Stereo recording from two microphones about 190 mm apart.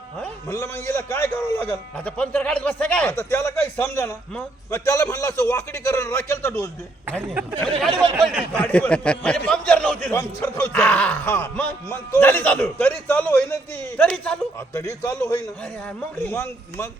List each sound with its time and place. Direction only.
0.2 s a man's voice: 15° left (ahead or behind)
8.3 s a man's voice: 5° left (ahead or behind)